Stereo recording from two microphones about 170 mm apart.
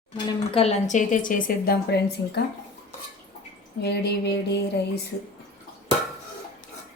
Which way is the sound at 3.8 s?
75° left (ahead or behind).